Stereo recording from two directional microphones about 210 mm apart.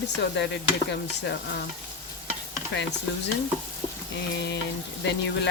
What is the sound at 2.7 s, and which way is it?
Speech, 60° left (ahead or behind).